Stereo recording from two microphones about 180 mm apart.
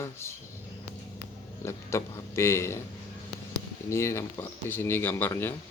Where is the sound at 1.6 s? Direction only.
15° left (ahead or behind).